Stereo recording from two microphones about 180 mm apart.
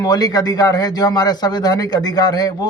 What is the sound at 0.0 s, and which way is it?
A man's voice, 20° left (ahead or behind).